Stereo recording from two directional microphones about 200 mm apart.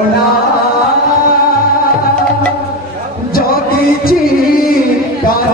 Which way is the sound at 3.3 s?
45° left (ahead or behind).